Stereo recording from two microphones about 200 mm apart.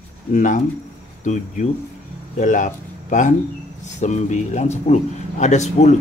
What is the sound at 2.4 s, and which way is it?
Speech, 40° left (ahead or behind).